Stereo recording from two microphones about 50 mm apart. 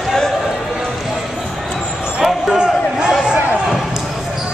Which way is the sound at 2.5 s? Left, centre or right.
Centre.